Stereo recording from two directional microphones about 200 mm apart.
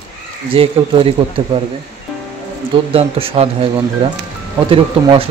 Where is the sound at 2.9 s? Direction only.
30° right (ahead or behind).